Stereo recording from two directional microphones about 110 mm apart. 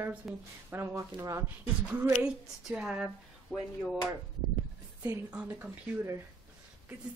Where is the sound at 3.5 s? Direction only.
15° left (ahead or behind).